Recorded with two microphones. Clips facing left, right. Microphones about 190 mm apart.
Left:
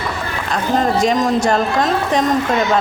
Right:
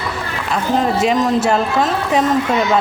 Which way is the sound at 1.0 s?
5° right (ahead or behind).